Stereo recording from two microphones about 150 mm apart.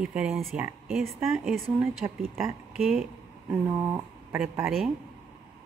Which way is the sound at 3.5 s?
15° right (ahead or behind).